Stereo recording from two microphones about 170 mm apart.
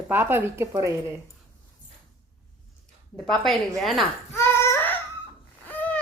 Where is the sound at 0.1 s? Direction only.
10° right (ahead or behind).